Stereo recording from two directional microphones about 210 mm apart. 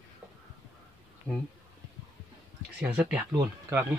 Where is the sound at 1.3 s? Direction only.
5° left (ahead or behind).